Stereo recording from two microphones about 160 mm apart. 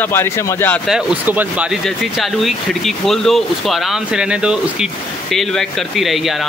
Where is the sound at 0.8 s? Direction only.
5° right (ahead or behind).